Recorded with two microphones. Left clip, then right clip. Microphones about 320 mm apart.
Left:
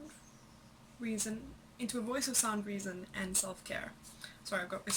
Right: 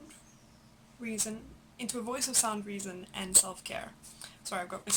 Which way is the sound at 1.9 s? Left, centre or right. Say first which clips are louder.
Right 2 dB; centre.